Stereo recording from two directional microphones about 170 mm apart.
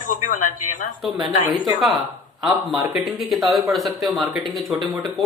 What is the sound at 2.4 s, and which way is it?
Speech, centre (ahead or behind).